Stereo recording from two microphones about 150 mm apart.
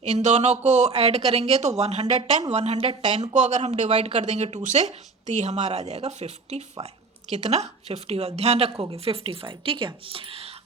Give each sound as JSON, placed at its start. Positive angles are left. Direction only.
{"t": 0.0, "sound": "speech", "side_deg": -50}